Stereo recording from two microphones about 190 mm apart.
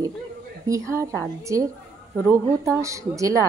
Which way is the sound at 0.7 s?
15° right (ahead or behind).